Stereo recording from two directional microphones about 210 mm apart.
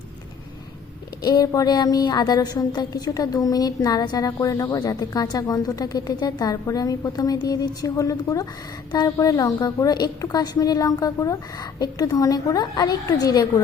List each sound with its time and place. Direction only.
1.2 s a woman's voice: 20° left (ahead or behind)